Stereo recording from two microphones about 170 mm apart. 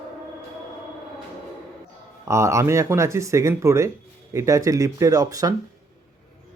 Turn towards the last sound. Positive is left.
turn(degrees=-20)  # may be behind; listen again after turning